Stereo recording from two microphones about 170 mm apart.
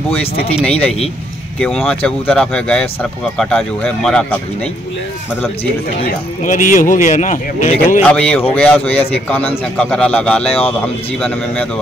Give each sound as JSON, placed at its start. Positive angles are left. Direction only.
{"t": 0.7, "sound": "speech", "side_deg": 5}
{"t": 6.0, "sound": "speech", "side_deg": 50}
{"t": 8.0, "sound": "speech", "side_deg": 5}